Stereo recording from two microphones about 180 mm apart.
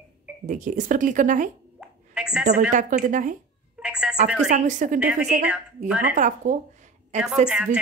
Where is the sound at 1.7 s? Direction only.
5° right (ahead or behind).